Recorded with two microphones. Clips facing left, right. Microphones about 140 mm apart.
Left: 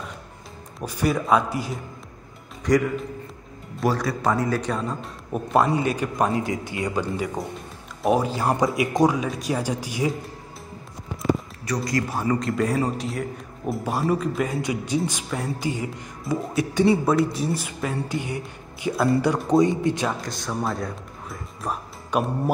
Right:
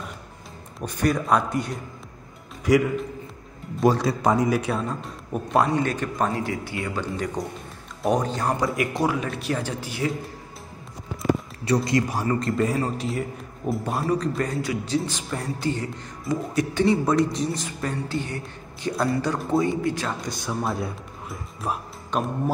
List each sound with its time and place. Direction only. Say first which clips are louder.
0.7 s a man's voice: even; 5° left (ahead or behind)
2.7 s a man's voice: right 1 dB; 10° right (ahead or behind)
3.8 s speech: right 3 dB; 20° right (ahead or behind)
4.6 s a man's voice: even; 5° right (ahead or behind); by 7.1 s 20° left (ahead or behind)
7.4 s a man's voice: even; 5° left (ahead or behind)
8.5 s a man's voice: left 4 dB; 20° left (ahead or behind)
11.6 s speech: right 4 dB; 25° right (ahead or behind)
12.4 s a man's voice: even; centre (ahead or behind)
14.6 s a man's voice: left 1 dB; 15° left (ahead or behind)
20.1 s speech: left 1 dB; centre (ahead or behind)
22.1 s a man's voice: left 2 dB; 10° left (ahead or behind)